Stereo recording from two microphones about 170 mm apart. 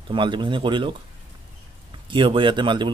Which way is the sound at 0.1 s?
30° right (ahead or behind).